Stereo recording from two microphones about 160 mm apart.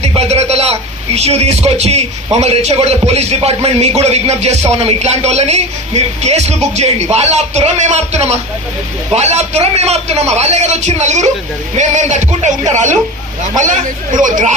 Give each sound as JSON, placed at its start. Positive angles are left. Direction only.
{"t": 0.0, "sound": "a man's voice", "side_deg": -40}